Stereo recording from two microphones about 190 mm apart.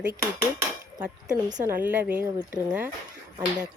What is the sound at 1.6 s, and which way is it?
A woman's voice, 10° right (ahead or behind).